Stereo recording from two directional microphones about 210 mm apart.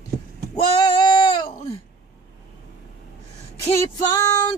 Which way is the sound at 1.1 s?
20° left (ahead or behind).